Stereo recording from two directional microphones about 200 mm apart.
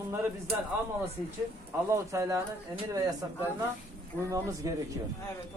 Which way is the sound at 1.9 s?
15° right (ahead or behind).